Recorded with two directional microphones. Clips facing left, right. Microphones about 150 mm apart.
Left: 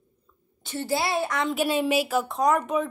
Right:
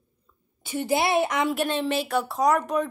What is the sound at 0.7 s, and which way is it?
Speech, 15° right (ahead or behind).